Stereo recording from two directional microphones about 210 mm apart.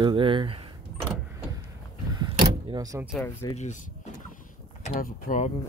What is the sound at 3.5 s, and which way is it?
Speech, 35° left (ahead or behind).